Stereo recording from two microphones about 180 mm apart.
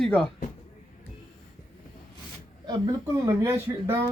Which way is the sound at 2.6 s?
20° right (ahead or behind).